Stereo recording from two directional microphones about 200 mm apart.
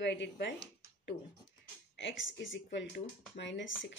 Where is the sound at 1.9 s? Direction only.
65° left (ahead or behind).